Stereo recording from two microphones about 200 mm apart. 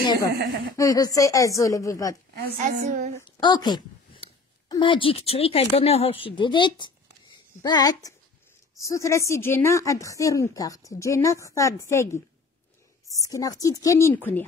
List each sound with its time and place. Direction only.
0.0 s a woman's voice: 20° left (ahead or behind)
2.6 s a woman's voice: 35° right (ahead or behind)
3.3 s a woman's voice: 20° left (ahead or behind)
13.2 s a woman's voice: 15° left (ahead or behind)